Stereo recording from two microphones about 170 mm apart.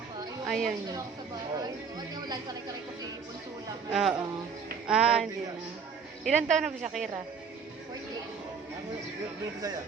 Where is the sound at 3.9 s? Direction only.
5° right (ahead or behind).